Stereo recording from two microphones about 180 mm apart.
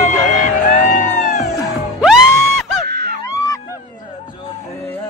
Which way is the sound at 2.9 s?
60° right (ahead or behind).